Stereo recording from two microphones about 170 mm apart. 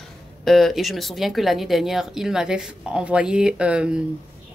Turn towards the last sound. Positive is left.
turn(degrees=-5)  # may be behind; listen again after turning